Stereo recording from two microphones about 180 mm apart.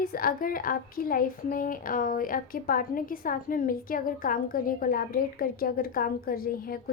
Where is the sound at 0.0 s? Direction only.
55° left (ahead or behind).